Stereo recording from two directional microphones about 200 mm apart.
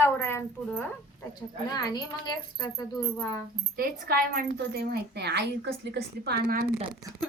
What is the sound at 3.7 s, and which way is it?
A woman's voice, 50° right (ahead or behind).